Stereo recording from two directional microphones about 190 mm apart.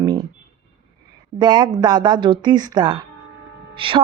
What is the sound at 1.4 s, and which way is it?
A woman's voice, 20° right (ahead or behind).